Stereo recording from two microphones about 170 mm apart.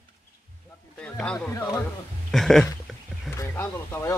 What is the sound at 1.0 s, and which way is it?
Speech, 5° left (ahead or behind).